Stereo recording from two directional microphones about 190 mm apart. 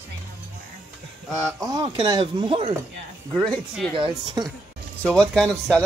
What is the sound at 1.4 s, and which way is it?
Speech, 20° right (ahead or behind).